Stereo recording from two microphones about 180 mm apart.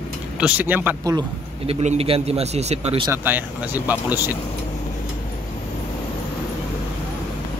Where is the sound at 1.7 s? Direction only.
35° right (ahead or behind).